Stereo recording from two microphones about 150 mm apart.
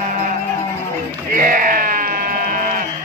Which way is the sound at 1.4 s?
65° right (ahead or behind).